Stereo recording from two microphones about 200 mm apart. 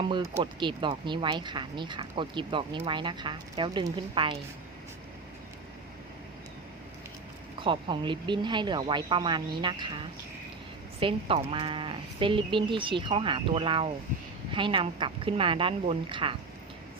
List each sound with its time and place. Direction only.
0.0 s speech: 25° right (ahead or behind)
7.6 s speech: 25° right (ahead or behind)
11.0 s speech: 25° right (ahead or behind)